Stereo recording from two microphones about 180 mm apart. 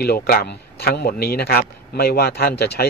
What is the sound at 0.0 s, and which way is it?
Speech, 60° left (ahead or behind).